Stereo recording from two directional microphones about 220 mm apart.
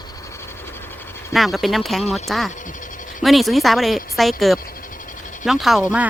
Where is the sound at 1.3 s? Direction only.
Centre (ahead or behind).